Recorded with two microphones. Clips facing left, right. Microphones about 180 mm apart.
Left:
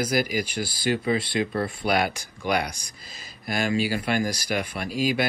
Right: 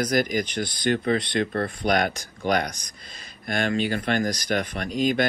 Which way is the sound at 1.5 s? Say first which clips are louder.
Even; 50° right (ahead or behind).